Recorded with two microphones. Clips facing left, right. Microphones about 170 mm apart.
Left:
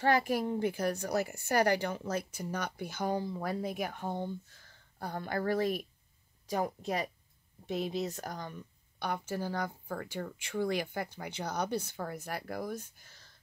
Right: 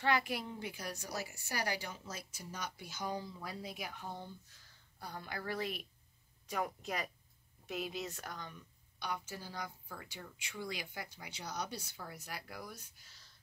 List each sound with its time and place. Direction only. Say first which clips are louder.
0.0 s a woman's voice: left 6 dB; 45° left (ahead or behind)